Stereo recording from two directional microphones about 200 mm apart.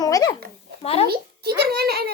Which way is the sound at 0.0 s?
20° left (ahead or behind).